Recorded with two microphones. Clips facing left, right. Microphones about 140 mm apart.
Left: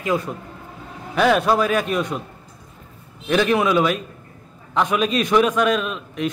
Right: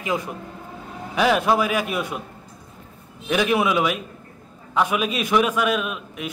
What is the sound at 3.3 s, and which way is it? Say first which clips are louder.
A man's voice: left 2 dB; 10° right (ahead or behind).